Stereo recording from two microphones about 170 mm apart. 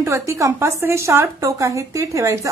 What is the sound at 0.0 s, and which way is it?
A woman's voice, 15° right (ahead or behind).